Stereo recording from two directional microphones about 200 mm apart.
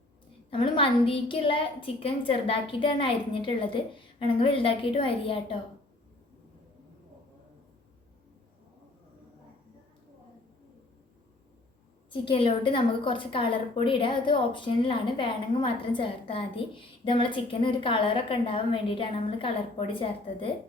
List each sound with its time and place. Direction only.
0.5 s a woman's voice: 25° left (ahead or behind)
12.1 s a woman's voice: 25° left (ahead or behind)